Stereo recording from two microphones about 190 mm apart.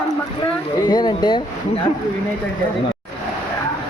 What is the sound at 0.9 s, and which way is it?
Speech, 20° left (ahead or behind).